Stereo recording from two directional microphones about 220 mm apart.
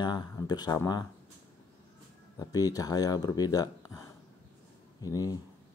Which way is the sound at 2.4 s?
15° left (ahead or behind).